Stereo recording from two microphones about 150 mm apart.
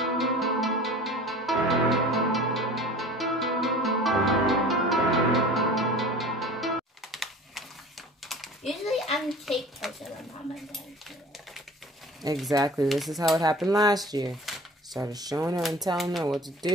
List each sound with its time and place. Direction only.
0.0 s music: centre (ahead or behind)
8.3 s typing: centre (ahead or behind)
12.4 s speech: 25° right (ahead or behind)
12.8 s speech: centre (ahead or behind)
13.7 s speech: 25° right (ahead or behind)
16.0 s speech: centre (ahead or behind)
16.3 s speech: 25° right (ahead or behind)